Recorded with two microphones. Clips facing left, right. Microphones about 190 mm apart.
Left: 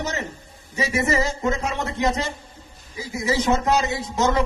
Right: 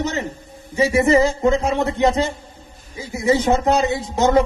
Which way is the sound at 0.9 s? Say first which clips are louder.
Right 7 dB; 30° right (ahead or behind).